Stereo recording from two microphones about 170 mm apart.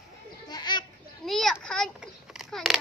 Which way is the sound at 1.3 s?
Centre (ahead or behind).